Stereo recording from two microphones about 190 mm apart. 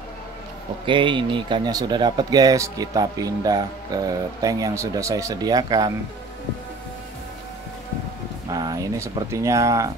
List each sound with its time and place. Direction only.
0.8 s speech: 25° right (ahead or behind)
8.5 s speech: 20° right (ahead or behind)